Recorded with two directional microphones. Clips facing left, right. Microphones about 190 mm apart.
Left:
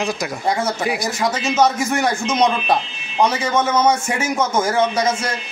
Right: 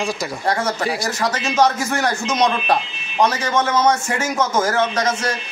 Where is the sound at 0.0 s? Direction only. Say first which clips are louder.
Left 1 dB; 5° left (ahead or behind).